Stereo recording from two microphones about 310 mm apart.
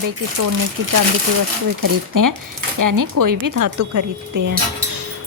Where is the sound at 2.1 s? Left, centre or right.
Right.